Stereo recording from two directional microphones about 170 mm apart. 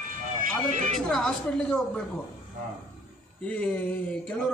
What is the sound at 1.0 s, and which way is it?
Speech, 5° left (ahead or behind).